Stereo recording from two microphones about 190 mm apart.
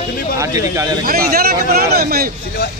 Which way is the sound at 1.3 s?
55° right (ahead or behind).